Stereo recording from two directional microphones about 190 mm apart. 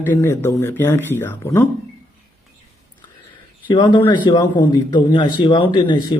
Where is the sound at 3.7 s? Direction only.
25° left (ahead or behind).